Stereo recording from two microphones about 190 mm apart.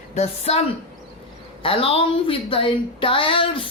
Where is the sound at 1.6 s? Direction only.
30° left (ahead or behind).